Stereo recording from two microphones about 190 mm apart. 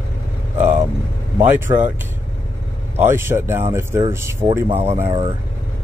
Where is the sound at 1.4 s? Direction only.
10° right (ahead or behind).